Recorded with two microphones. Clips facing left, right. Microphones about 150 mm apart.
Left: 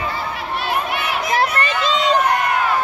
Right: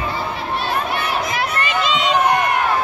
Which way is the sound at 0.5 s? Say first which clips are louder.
Even; 35° right (ahead or behind).